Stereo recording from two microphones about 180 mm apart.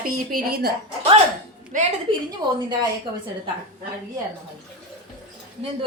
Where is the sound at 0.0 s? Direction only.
55° right (ahead or behind).